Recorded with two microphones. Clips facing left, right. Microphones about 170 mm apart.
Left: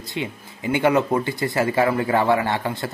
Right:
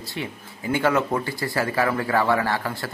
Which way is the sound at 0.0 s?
20° left (ahead or behind).